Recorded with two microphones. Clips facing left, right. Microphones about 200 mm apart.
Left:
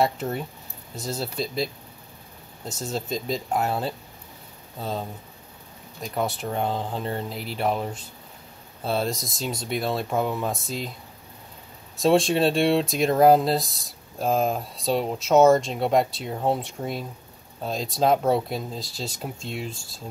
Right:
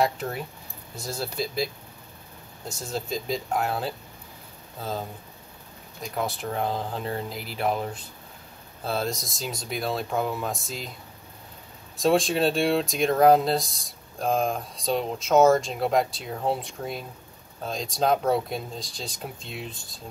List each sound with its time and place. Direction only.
0.0 s speech: centre (ahead or behind)
0.9 s speech: 20° left (ahead or behind)
1.2 s speech: centre (ahead or behind)
2.9 s speech: centre (ahead or behind)
6.0 s speech: centre (ahead or behind)
12.0 s speech: centre (ahead or behind)